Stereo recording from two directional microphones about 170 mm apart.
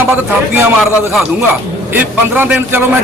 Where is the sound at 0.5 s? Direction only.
10° right (ahead or behind).